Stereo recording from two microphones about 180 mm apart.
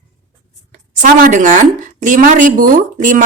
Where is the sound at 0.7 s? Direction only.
45° right (ahead or behind).